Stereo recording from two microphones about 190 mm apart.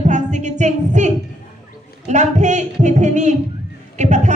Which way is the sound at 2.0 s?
40° right (ahead or behind).